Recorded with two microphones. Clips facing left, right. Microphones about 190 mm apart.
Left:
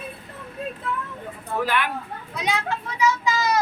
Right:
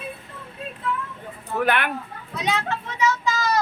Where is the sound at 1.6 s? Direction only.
60° right (ahead or behind).